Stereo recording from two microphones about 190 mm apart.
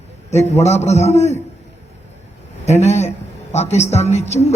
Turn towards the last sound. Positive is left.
turn(degrees=35)  # may be behind; listen again after turning